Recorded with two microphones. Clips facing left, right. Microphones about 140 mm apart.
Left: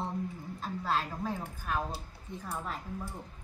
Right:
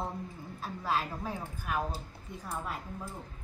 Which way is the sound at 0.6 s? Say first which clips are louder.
Even; 10° right (ahead or behind).